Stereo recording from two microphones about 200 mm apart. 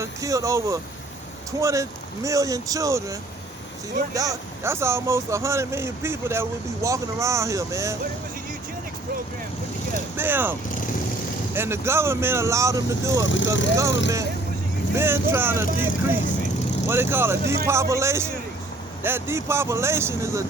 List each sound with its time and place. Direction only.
0.0 s speech: 15° right (ahead or behind)
10.2 s speech: 10° right (ahead or behind)
11.5 s speech: 10° right (ahead or behind)
13.2 s speech: 70° left (ahead or behind)
14.9 s speech: 10° right (ahead or behind)